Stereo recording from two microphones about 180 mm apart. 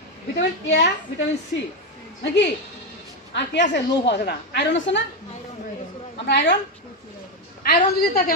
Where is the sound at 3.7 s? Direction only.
75° left (ahead or behind).